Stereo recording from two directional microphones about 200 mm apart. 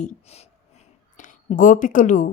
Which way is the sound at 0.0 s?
30° left (ahead or behind).